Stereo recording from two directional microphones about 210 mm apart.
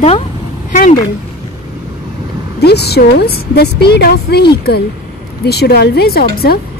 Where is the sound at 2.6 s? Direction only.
50° left (ahead or behind).